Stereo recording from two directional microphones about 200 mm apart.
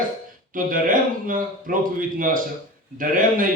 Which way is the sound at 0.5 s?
45° right (ahead or behind).